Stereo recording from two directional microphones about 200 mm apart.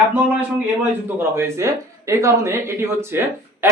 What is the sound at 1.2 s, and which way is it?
Speech, 15° right (ahead or behind).